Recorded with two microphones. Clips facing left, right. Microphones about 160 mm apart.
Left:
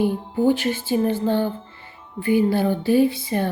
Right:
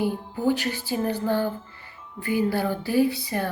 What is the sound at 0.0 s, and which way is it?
Speech, 25° left (ahead or behind).